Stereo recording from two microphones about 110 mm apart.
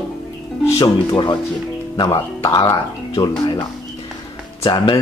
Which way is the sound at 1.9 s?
40° left (ahead or behind).